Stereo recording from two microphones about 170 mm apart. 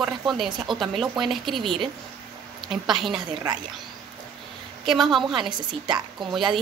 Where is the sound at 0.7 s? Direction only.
30° right (ahead or behind).